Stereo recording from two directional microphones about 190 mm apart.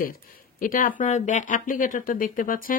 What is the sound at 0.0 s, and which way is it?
Speech, 50° left (ahead or behind).